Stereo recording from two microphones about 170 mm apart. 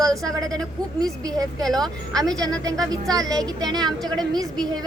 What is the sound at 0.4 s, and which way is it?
A woman's voice, 20° right (ahead or behind).